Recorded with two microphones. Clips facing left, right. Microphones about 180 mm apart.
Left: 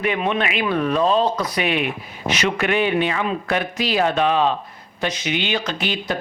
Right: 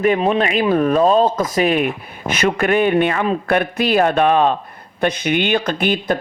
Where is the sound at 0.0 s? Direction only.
40° right (ahead or behind).